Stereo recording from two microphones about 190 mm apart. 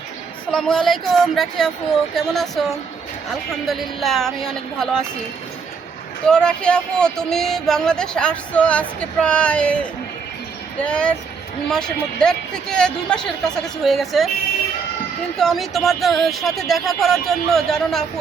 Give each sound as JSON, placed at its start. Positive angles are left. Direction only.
{"t": 0.5, "sound": "speech", "side_deg": 5}
{"t": 6.2, "sound": "speech", "side_deg": 5}
{"t": 10.8, "sound": "speech", "side_deg": 5}
{"t": 15.4, "sound": "speech", "side_deg": 0}